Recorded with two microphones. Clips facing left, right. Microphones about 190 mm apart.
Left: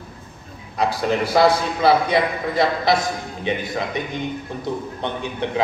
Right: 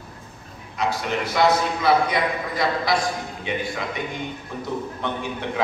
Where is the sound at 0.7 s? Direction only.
35° left (ahead or behind).